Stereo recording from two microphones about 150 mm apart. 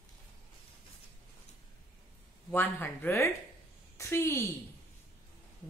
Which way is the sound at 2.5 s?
15° left (ahead or behind).